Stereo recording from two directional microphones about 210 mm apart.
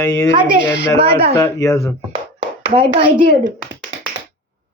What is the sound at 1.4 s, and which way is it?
Speech, 15° left (ahead or behind).